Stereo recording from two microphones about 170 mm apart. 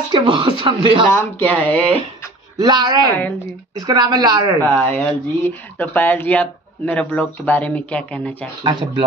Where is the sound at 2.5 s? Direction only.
25° right (ahead or behind).